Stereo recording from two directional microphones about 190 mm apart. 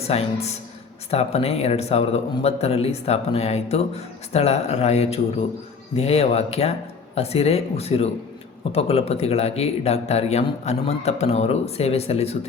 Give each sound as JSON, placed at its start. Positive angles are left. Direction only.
{"t": 0.0, "sound": "a man's voice", "side_deg": 35}